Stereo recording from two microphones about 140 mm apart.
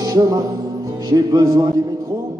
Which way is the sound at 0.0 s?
25° right (ahead or behind).